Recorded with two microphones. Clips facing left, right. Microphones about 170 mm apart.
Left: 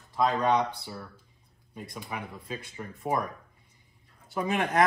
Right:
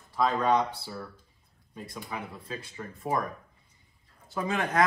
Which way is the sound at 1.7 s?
15° left (ahead or behind).